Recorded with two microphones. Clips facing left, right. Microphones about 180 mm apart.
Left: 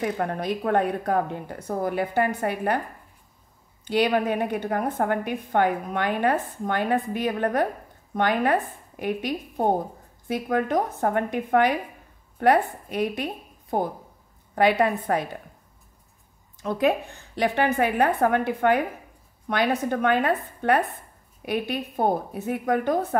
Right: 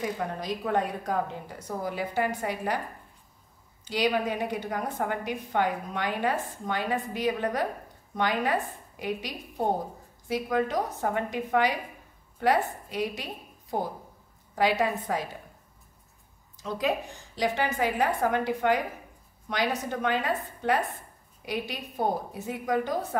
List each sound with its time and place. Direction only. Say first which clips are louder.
0.0 s a woman's voice: left 5 dB; 60° left (ahead or behind)
3.8 s a woman's voice: left 5 dB; 55° left (ahead or behind)
16.5 s a woman's voice: left 6 dB; 55° left (ahead or behind)